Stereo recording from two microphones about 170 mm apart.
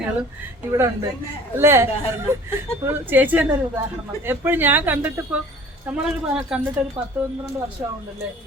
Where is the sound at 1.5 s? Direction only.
15° right (ahead or behind).